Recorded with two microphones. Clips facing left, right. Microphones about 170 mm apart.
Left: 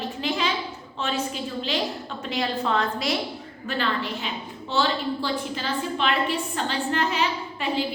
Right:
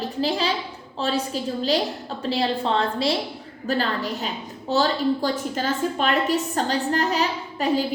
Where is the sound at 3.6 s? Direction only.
40° right (ahead or behind).